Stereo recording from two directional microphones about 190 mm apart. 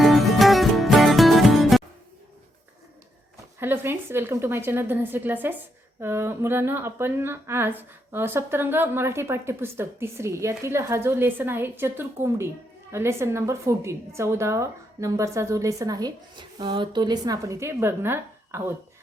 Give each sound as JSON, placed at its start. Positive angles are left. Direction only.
{"t": 0.0, "sound": "music", "side_deg": 0}
{"t": 3.6, "sound": "speech", "side_deg": -10}